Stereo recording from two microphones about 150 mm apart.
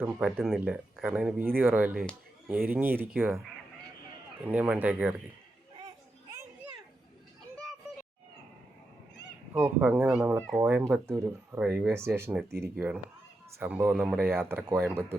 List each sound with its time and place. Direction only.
0.0 s speech: 10° right (ahead or behind)
4.4 s speech: 10° right (ahead or behind)
9.6 s speech: 15° right (ahead or behind)
14.2 s speech: 15° right (ahead or behind)